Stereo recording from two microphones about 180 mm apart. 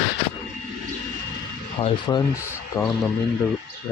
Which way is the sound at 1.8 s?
25° left (ahead or behind).